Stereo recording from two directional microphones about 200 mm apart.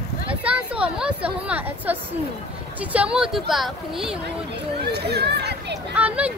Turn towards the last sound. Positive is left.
turn(degrees=-5)  # may be behind; listen again after turning